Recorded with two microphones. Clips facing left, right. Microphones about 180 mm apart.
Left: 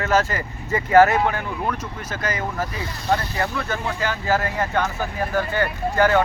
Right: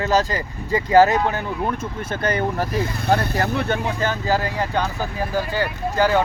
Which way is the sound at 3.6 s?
20° right (ahead or behind).